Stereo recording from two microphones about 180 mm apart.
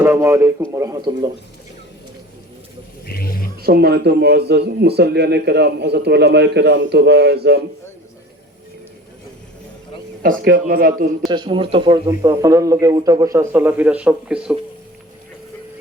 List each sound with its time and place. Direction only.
0.0 s speech: 15° right (ahead or behind)
3.1 s speech: 55° left (ahead or behind)
3.6 s a man's voice: 60° right (ahead or behind)
10.2 s speech: 50° right (ahead or behind)
11.3 s speech: 25° right (ahead or behind); by 14.5 s 5° right (ahead or behind)